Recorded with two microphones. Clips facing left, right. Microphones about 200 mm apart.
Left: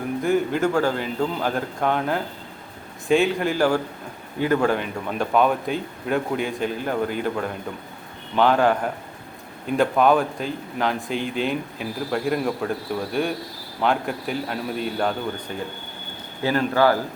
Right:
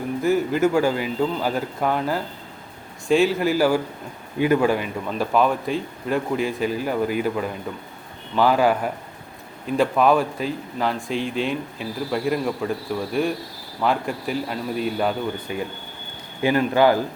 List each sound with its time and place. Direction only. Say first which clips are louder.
0.2 s speech: right 2 dB; 5° right (ahead or behind)
16.4 s speech: right 2 dB; 15° right (ahead or behind)